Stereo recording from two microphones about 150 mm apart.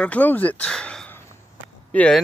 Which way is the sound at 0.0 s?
10° left (ahead or behind).